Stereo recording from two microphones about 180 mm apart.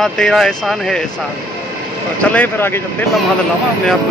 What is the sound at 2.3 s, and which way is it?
Speech, 10° left (ahead or behind).